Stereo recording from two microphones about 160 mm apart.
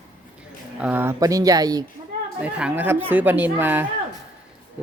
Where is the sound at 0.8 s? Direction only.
10° right (ahead or behind).